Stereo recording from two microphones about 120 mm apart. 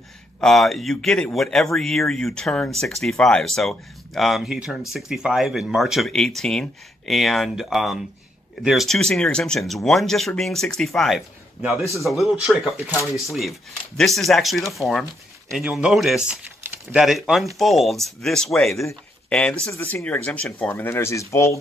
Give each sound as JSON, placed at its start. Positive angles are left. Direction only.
{"t": 0.4, "sound": "speech", "side_deg": 5}
{"t": 19.2, "sound": "a sound", "side_deg": 10}
{"t": 19.7, "sound": "speech", "side_deg": 20}